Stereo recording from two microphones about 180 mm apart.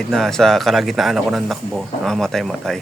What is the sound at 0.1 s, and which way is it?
A man's voice, centre (ahead or behind).